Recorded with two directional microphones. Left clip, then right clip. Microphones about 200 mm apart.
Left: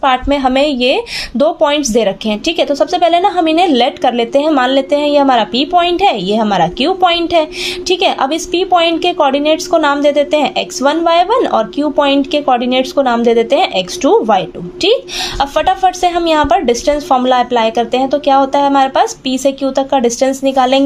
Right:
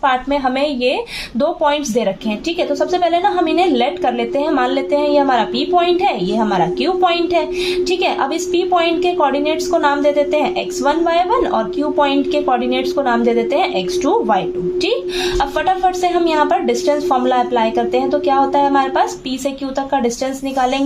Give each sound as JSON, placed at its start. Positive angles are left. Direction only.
{"t": 0.0, "sound": "a woman's voice", "side_deg": 45}